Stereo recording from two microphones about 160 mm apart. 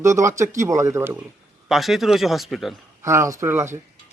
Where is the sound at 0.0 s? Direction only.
20° right (ahead or behind).